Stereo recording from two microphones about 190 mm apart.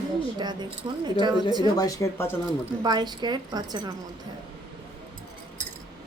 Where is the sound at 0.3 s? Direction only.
25° right (ahead or behind).